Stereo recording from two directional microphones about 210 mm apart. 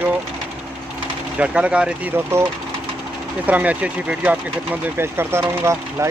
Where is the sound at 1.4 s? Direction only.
5° right (ahead or behind).